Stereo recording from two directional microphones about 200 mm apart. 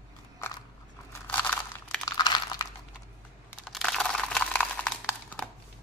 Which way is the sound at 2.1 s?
20° left (ahead or behind).